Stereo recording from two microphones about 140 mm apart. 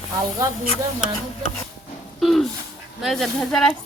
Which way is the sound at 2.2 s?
Centre (ahead or behind).